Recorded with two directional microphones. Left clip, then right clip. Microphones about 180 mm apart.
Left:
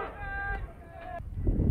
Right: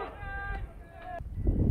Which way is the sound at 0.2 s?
25° right (ahead or behind).